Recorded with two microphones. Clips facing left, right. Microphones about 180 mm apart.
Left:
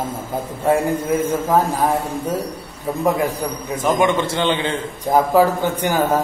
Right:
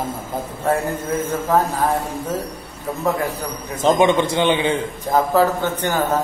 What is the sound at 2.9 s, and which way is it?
Speech, 15° left (ahead or behind).